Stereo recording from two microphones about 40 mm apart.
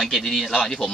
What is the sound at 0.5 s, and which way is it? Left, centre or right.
Speech, centre.